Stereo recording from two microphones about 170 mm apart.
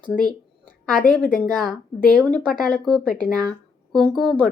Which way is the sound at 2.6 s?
5° left (ahead or behind).